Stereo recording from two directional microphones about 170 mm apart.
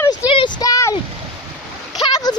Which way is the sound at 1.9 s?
25° left (ahead or behind).